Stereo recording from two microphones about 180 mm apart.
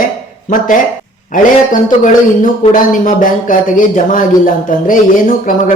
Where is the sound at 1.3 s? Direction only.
45° left (ahead or behind).